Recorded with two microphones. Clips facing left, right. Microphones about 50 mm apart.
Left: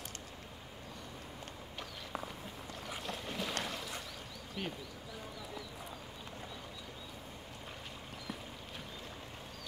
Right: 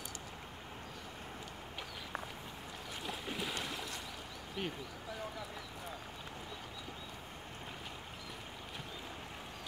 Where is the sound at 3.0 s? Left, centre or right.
Centre.